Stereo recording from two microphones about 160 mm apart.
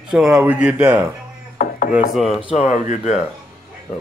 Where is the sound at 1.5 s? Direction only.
55° left (ahead or behind).